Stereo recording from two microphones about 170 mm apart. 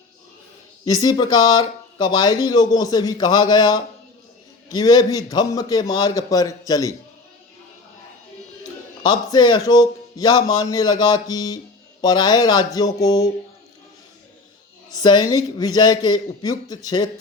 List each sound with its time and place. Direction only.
1.0 s speech: 25° left (ahead or behind)
9.0 s speech: 25° left (ahead or behind)
14.9 s speech: 25° left (ahead or behind)